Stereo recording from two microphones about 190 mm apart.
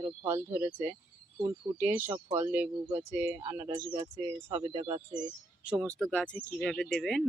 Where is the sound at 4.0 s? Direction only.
30° right (ahead or behind).